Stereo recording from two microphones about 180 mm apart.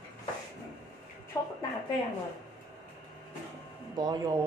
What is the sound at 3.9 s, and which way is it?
Speech, 20° right (ahead or behind).